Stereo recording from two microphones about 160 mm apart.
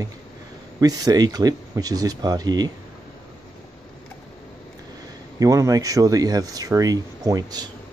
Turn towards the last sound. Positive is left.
turn(degrees=-25)  # may be behind; listen again after turning